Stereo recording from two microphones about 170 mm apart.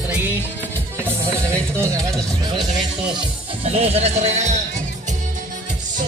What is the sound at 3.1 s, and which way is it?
Speech, 30° right (ahead or behind).